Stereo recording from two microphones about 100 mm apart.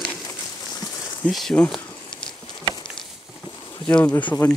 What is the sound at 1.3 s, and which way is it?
Speech, 5° left (ahead or behind).